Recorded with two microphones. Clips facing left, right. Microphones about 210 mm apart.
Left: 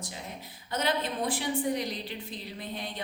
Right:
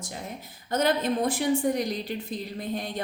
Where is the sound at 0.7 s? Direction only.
45° right (ahead or behind).